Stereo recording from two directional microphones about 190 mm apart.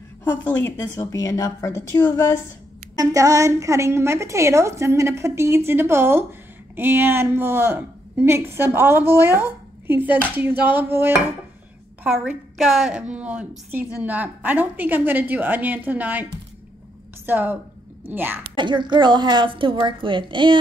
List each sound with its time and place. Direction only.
0.2 s a woman's voice: 10° left (ahead or behind)
3.0 s a woman's voice: 15° right (ahead or behind)
17.3 s a woman's voice: 10° right (ahead or behind)
18.6 s a woman's voice: 25° right (ahead or behind)